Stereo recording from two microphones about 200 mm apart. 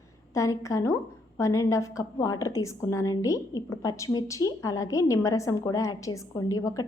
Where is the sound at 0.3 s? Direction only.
15° left (ahead or behind).